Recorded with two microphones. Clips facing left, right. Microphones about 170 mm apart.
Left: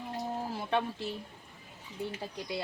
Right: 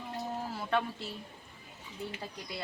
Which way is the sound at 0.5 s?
20° left (ahead or behind).